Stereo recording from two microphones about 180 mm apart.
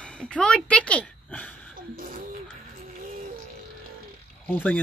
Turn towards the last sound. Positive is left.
turn(degrees=10)  # may be behind; listen again after turning